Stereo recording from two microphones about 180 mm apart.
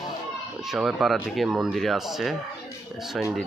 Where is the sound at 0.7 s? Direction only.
Centre (ahead or behind).